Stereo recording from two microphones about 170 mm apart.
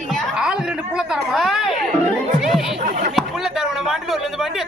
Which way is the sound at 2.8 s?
50° right (ahead or behind).